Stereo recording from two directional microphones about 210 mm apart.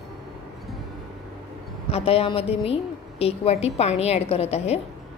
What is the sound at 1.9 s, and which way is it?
A woman's voice, 30° left (ahead or behind).